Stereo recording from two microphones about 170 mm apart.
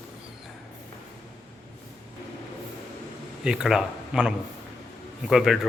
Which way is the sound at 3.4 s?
5° right (ahead or behind).